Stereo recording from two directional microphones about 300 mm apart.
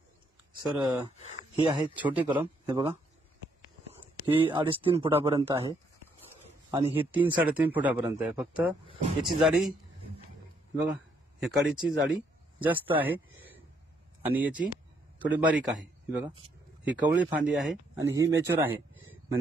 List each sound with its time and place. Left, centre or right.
0.5 s a sound: centre
0.7 s speech: centre
4.3 s speech: centre
7.1 s speech: centre
11.4 s speech: centre
12.9 s a sound: centre
14.2 s a man's voice: centre